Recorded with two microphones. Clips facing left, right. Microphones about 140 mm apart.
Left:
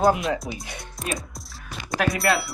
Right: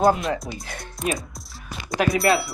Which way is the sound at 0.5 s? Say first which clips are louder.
Even; centre (ahead or behind).